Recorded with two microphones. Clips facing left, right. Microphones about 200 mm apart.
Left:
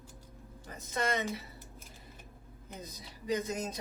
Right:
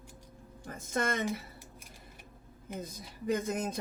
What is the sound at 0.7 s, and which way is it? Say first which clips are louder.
Speech: right 1 dB; 50° right (ahead or behind).